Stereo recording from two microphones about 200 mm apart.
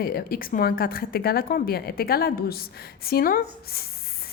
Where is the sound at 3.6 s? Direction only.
50° left (ahead or behind).